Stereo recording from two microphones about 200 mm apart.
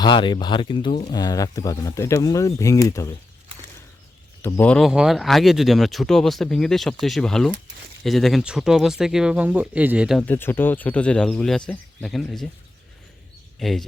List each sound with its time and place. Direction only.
0.0 s speech: 25° left (ahead or behind)
4.4 s speech: 10° left (ahead or behind)
10.2 s speech: 10° left (ahead or behind)
13.6 s speech: centre (ahead or behind)